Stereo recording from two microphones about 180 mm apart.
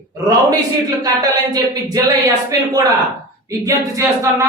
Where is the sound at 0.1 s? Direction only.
20° right (ahead or behind).